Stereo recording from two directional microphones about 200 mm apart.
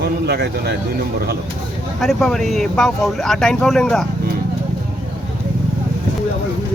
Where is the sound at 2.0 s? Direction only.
Centre (ahead or behind).